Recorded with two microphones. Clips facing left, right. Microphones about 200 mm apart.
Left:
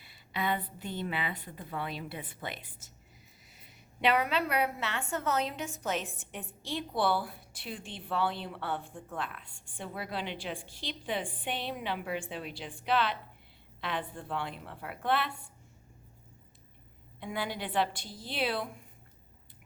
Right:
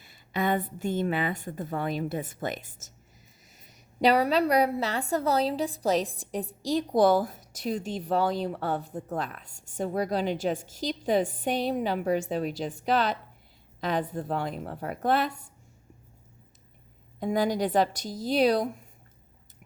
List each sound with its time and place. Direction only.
0.0 s a woman's voice: 45° right (ahead or behind)
17.2 s a woman's voice: 40° right (ahead or behind)